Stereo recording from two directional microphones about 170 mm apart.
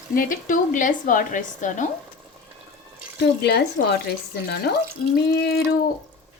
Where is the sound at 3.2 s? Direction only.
75° left (ahead or behind).